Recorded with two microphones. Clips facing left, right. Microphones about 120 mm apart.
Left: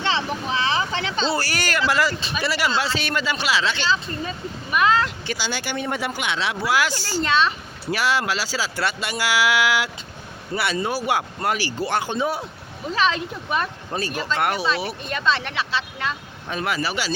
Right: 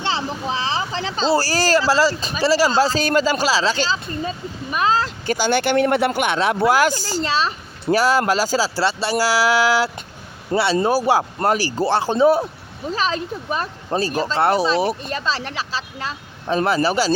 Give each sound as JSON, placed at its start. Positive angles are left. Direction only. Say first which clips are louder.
{"t": 0.0, "sound": "speech", "louder": "right 1 dB", "side_deg": -35}
{"t": 4.7, "sound": "a sound", "louder": "even", "side_deg": -30}
{"t": 5.3, "sound": "speech", "louder": "right 10 dB", "side_deg": -55}